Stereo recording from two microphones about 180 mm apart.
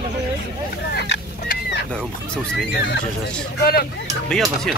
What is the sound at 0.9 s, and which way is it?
Fowl, 70° left (ahead or behind).